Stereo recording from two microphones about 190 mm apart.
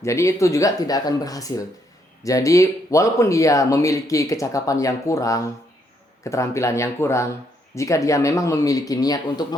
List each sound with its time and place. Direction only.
0.0 s speech: 15° left (ahead or behind)